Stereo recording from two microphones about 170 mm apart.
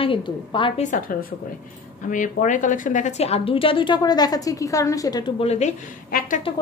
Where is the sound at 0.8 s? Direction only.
50° left (ahead or behind).